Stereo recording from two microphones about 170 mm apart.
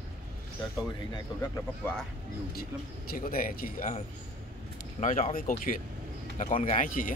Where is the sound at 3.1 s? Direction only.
55° left (ahead or behind).